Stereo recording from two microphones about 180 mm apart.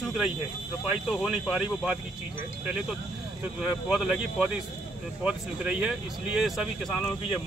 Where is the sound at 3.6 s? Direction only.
5° right (ahead or behind).